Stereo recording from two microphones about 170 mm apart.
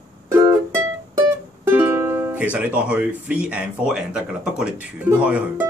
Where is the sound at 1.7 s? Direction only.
15° right (ahead or behind).